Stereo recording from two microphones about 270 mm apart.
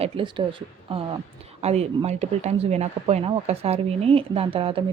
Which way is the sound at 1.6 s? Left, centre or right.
Right.